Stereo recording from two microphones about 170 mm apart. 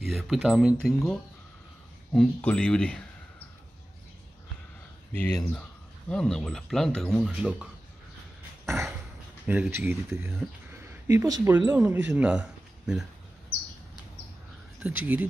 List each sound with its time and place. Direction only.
0.0 s speech: centre (ahead or behind)
5.1 s speech: 10° left (ahead or behind)
8.6 s a sound: 15° right (ahead or behind)
9.5 s speech: 10° right (ahead or behind)
14.8 s speech: 10° right (ahead or behind)